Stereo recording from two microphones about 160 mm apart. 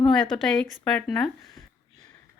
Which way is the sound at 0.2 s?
Centre (ahead or behind).